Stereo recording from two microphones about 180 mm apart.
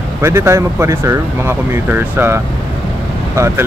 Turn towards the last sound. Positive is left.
turn(degrees=-15)  # may be behind; listen again after turning